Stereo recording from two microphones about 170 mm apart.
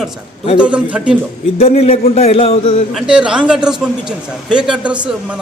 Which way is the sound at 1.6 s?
35° left (ahead or behind).